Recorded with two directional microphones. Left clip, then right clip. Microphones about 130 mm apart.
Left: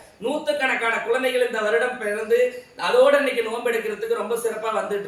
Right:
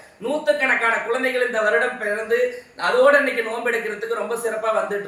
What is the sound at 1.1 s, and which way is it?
Speech, 15° left (ahead or behind).